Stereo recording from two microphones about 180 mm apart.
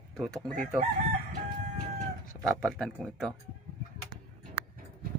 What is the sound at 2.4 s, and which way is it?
Speech, 5° left (ahead or behind).